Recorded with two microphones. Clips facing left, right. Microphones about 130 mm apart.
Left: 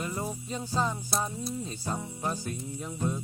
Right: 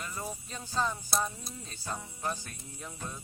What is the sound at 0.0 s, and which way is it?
Music, 25° left (ahead or behind).